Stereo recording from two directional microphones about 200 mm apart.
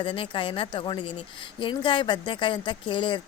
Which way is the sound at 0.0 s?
25° left (ahead or behind).